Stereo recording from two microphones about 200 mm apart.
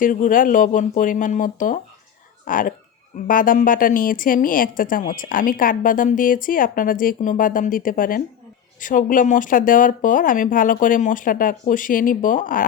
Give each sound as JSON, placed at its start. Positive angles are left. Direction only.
{"t": 0.0, "sound": "a woman's voice", "side_deg": 40}